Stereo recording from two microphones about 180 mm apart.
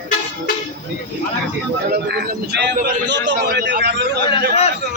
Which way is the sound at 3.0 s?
75° right (ahead or behind).